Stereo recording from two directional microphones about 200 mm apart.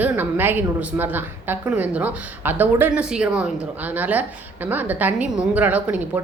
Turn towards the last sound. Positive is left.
turn(degrees=-10)  # may be behind; listen again after turning